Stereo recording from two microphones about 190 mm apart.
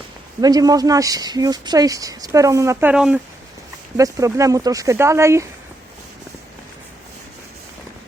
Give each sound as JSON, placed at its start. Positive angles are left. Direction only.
{"t": 0.4, "sound": "speech", "side_deg": -20}
{"t": 2.9, "sound": "speech", "side_deg": -5}
{"t": 3.9, "sound": "speech", "side_deg": -15}